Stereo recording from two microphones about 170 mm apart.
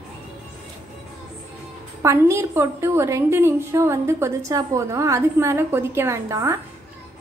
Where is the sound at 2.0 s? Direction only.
15° right (ahead or behind).